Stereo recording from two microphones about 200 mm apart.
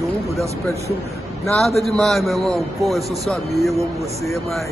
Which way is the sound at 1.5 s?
Centre (ahead or behind).